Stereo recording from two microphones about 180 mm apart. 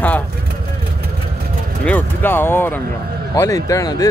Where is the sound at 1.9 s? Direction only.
10° left (ahead or behind).